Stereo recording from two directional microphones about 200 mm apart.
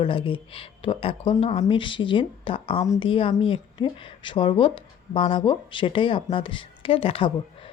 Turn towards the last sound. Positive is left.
turn(degrees=25)  # may be behind; listen again after turning